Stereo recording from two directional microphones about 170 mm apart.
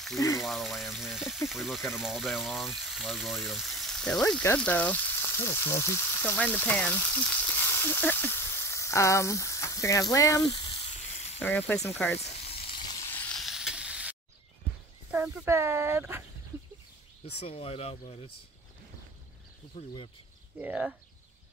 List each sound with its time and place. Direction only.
0.4 s speech: centre (ahead or behind); by 11.3 s 35° left (ahead or behind)
11.3 s speech: 10° left (ahead or behind)
12.4 s frying: 30° left (ahead or behind)
13.0 s sizzle: 10° left (ahead or behind); by 14.1 s 5° right (ahead or behind)
15.0 s a sound: 5° right (ahead or behind)
15.4 s speech: 15° right (ahead or behind)
17.4 s speech: 35° left (ahead or behind)
19.7 s speech: 50° left (ahead or behind)
20.5 s speech: 5° right (ahead or behind)